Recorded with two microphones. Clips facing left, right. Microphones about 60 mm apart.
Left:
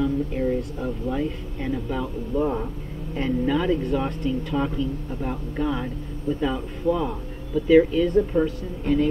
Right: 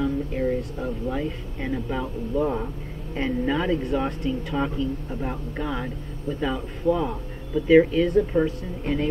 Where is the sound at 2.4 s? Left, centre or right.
Centre.